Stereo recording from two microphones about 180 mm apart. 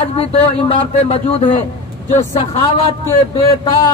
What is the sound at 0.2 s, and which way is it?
A man's voice, 35° left (ahead or behind).